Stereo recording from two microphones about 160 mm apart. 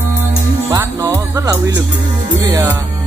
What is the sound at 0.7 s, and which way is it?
Music, 25° right (ahead or behind).